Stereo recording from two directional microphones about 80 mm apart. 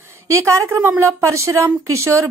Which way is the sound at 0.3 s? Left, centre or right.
Right.